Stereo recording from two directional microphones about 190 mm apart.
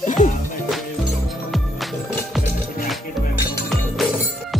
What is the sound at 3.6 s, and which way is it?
Music, centre (ahead or behind).